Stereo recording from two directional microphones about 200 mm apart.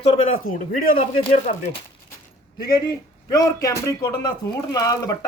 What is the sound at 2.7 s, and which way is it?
A man's voice, 20° left (ahead or behind).